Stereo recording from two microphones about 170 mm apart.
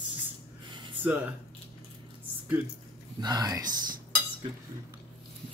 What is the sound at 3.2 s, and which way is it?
Speech, 25° right (ahead or behind).